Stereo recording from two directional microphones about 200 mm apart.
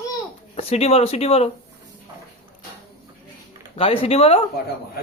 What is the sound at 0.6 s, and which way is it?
Speech, 30° left (ahead or behind).